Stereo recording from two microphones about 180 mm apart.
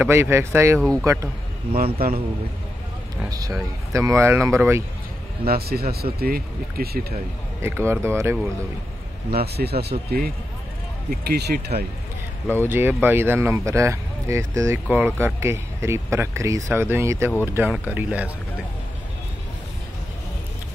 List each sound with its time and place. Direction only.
0.0 s speech: 15° right (ahead or behind)
1.8 s speech: 55° right (ahead or behind)
3.3 s speech: 20° right (ahead or behind)
5.5 s speech: 60° right (ahead or behind)
7.6 s speech: 15° right (ahead or behind)
9.3 s speech: 60° right (ahead or behind)
12.5 s speech: 10° right (ahead or behind)